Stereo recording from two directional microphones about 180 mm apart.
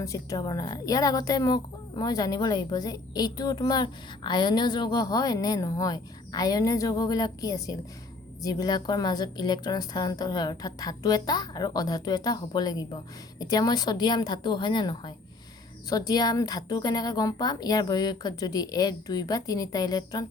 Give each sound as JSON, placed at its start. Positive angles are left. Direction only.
{"t": 0.0, "sound": "a woman's voice", "side_deg": 20}